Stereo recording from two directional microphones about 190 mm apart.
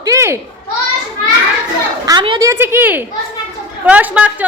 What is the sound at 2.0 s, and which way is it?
A woman's voice, 25° right (ahead or behind).